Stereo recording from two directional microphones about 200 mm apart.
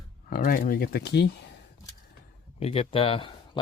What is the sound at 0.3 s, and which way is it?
Speech, 45° left (ahead or behind).